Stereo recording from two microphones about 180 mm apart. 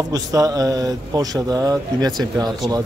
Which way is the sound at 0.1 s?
20° right (ahead or behind).